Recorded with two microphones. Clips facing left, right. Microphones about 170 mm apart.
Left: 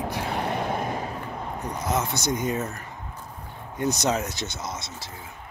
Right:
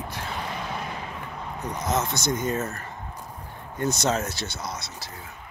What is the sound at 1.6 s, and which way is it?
Speech, 10° left (ahead or behind).